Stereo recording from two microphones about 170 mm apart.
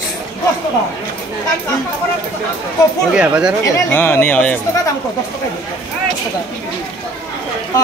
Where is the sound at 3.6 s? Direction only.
15° left (ahead or behind).